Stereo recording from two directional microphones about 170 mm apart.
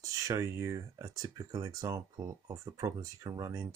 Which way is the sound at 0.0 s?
20° right (ahead or behind).